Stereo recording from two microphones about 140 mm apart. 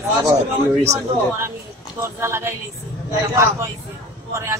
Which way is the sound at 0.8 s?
20° right (ahead or behind).